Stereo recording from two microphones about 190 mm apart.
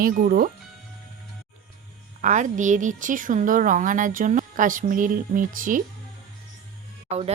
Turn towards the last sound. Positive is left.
turn(degrees=-35)  # may be behind; listen again after turning